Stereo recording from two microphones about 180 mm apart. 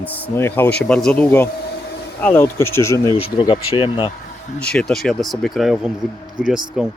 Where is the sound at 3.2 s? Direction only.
30° left (ahead or behind).